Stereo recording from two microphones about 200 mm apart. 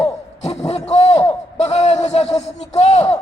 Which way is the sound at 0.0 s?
30° left (ahead or behind).